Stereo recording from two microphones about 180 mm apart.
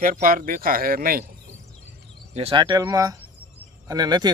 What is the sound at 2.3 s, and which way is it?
A man's voice, 30° right (ahead or behind).